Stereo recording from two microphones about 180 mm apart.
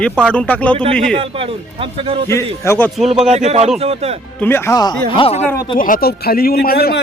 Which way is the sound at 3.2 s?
35° right (ahead or behind).